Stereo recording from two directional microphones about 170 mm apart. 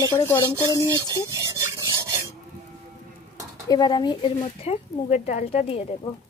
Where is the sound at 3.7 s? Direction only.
25° left (ahead or behind).